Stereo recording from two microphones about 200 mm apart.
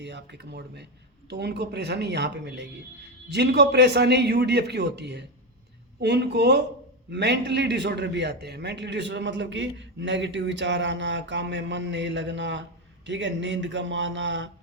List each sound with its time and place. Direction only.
0.0 s a man's voice: 60° right (ahead or behind)